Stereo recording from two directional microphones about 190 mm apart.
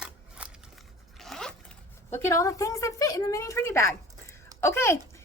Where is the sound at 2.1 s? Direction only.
15° left (ahead or behind).